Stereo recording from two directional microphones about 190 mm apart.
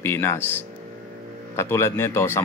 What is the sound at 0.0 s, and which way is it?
Speech, 15° left (ahead or behind).